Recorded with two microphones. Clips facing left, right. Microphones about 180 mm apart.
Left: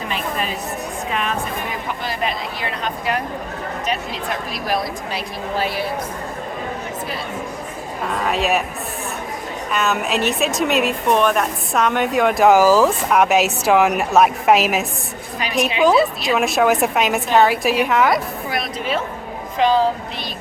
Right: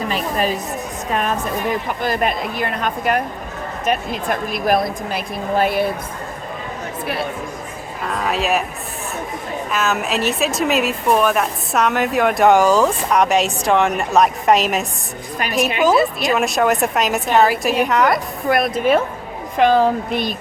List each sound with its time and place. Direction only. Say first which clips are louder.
0.1 s a sound: right 3 dB; 40° right (ahead or behind)
2.0 s speech: right 4 dB; 50° right (ahead or behind)
8.1 s a woman's voice: even; centre (ahead or behind)
9.7 s a woman's voice: left 1 dB; centre (ahead or behind)
18.4 s speech: right 8 dB; 55° right (ahead or behind)